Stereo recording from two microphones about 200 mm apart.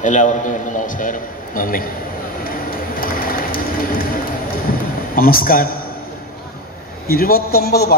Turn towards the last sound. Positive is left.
turn(degrees=50)  # may be behind; listen again after turning